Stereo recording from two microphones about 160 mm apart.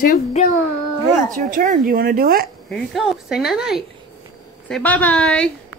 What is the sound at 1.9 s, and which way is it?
Speech, 70° right (ahead or behind).